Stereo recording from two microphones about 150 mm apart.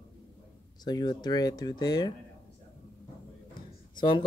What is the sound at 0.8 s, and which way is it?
Speech, 25° left (ahead or behind).